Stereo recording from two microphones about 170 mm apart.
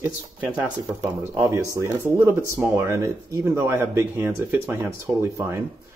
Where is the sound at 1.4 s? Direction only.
15° right (ahead or behind).